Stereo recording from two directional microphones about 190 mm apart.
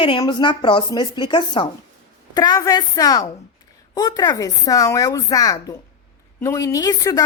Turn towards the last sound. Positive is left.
turn(degrees=20)  # may be behind; listen again after turning